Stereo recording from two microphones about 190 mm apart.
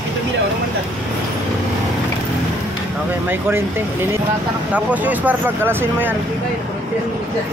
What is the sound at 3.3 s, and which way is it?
Speech, 10° right (ahead or behind).